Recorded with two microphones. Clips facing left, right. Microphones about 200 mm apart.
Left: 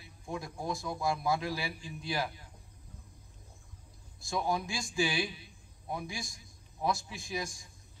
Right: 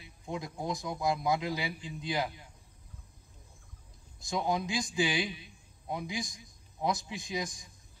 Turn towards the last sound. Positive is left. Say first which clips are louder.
# right 2 dB
turn(degrees=-20)  # may be behind; listen again after turning